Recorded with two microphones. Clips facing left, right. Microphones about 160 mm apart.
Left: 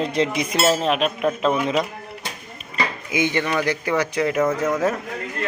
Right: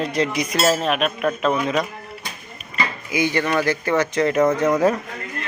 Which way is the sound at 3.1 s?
20° left (ahead or behind).